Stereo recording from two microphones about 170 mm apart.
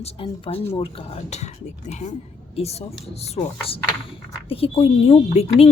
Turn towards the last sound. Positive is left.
turn(degrees=35)  # may be behind; listen again after turning